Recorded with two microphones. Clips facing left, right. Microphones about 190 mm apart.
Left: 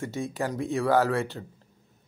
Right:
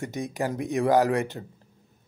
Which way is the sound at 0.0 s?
15° right (ahead or behind).